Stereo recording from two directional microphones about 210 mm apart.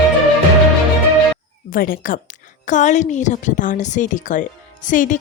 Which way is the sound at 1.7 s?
45° left (ahead or behind).